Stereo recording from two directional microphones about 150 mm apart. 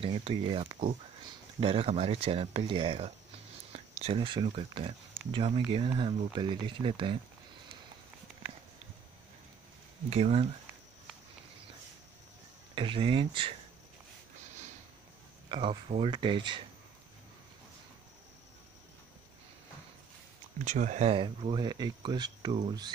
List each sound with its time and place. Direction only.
0.0 s speech: 35° right (ahead or behind)
3.7 s a sound: 45° right (ahead or behind)
4.2 s speech: 30° right (ahead or behind)
10.0 s speech: 45° right (ahead or behind)
12.7 s speech: 35° right (ahead or behind)
15.5 s speech: 35° right (ahead or behind)
20.5 s speech: 55° right (ahead or behind); by 22.9 s 30° right (ahead or behind)